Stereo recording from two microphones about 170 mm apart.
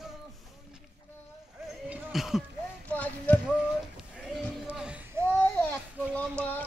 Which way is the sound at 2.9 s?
10° left (ahead or behind).